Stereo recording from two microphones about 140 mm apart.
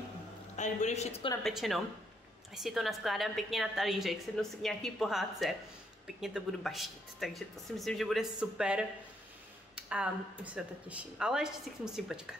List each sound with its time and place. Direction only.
0.6 s speech: 55° left (ahead or behind)
1.4 s a woman's voice: centre (ahead or behind)